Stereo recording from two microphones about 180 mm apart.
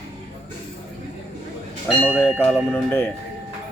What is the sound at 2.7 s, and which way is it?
Speech, 10° left (ahead or behind).